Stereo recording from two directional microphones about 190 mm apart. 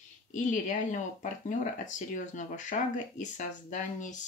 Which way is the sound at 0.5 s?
40° left (ahead or behind).